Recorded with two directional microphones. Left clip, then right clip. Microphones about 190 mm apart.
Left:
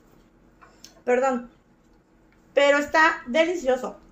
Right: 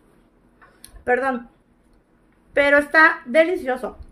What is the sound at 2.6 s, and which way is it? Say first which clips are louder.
A woman's voice: right 4 dB; 35° right (ahead or behind).